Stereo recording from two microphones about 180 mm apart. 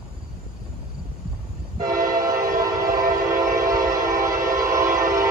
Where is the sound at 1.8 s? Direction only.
55° right (ahead or behind).